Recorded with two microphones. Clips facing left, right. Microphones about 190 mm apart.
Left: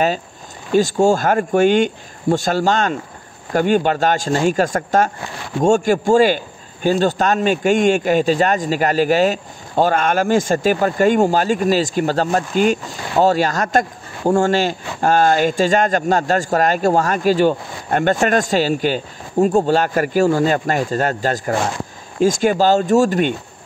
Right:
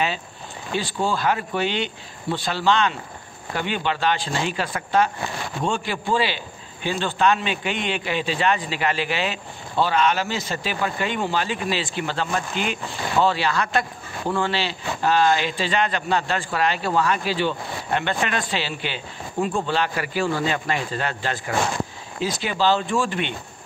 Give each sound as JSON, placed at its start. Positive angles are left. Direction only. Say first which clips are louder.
{"t": 0.7, "sound": "speech", "louder": "left 11 dB", "side_deg": 45}